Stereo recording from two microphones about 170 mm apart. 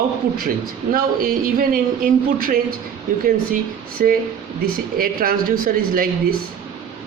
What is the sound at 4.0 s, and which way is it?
Speech, 55° right (ahead or behind).